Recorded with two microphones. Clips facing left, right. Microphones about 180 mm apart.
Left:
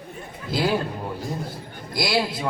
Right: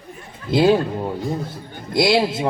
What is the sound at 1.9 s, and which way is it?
Speech, 25° right (ahead or behind).